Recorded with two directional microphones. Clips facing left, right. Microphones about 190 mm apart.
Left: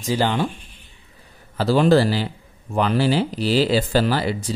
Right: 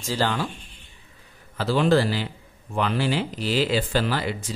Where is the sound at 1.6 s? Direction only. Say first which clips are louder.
Left 4 dB; 35° left (ahead or behind).